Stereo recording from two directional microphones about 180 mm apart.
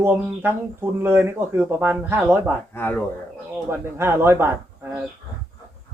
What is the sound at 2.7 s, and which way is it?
Speech, 10° left (ahead or behind).